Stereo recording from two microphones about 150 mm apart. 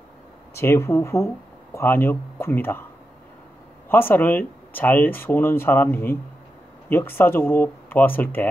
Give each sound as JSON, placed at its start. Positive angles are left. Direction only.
{"t": 0.6, "sound": "speech", "side_deg": 20}
{"t": 3.9, "sound": "speech", "side_deg": 15}